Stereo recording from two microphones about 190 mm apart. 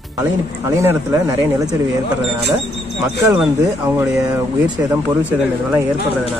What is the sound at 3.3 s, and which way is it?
Speech, 10° right (ahead or behind).